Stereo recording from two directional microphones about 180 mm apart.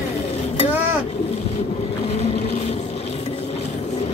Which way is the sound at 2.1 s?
35° left (ahead or behind).